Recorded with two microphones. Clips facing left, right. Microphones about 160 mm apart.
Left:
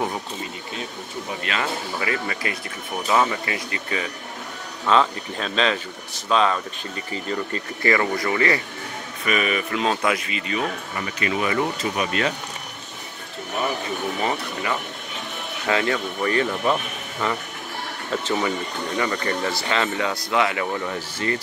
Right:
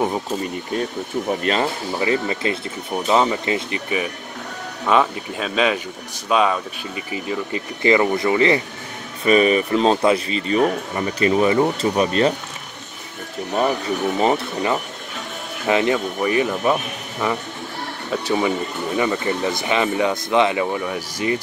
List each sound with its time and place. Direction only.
1.4 s speech: 35° right (ahead or behind)
9.2 s speech: 35° right (ahead or behind)
14.2 s speech: 30° right (ahead or behind); by 21.4 s 10° right (ahead or behind)